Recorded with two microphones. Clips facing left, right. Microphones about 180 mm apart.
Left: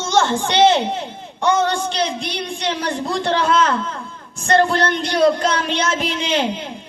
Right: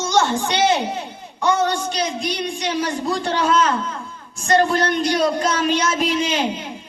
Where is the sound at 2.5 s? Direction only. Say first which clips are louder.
Even; 65° left (ahead or behind).